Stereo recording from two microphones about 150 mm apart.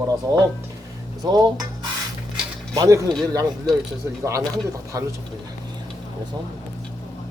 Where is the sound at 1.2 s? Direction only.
25° right (ahead or behind).